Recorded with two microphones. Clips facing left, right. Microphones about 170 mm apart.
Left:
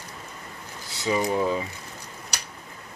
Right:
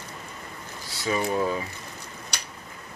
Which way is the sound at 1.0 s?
15° left (ahead or behind).